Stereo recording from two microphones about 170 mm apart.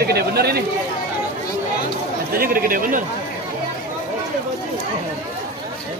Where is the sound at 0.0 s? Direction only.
70° right (ahead or behind).